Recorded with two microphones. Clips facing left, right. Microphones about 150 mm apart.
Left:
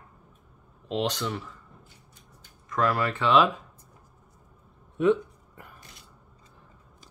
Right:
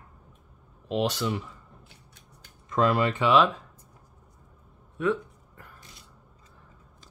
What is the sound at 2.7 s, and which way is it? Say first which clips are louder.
Speech: right 2 dB; 20° right (ahead or behind).